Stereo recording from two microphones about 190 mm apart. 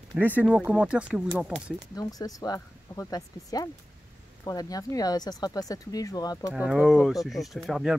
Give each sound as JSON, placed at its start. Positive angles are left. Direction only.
{"t": 0.2, "sound": "speech", "side_deg": -10}
{"t": 2.0, "sound": "speech", "side_deg": 20}
{"t": 6.5, "sound": "speech", "side_deg": -5}